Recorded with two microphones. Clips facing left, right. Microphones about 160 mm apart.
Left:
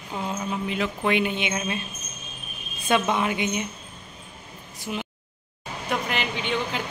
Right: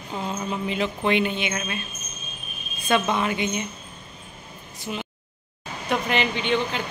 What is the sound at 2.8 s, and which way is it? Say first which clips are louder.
Speech: even; 15° left (ahead or behind).